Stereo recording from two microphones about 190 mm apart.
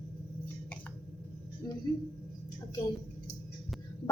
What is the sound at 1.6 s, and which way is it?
Speech, 20° left (ahead or behind).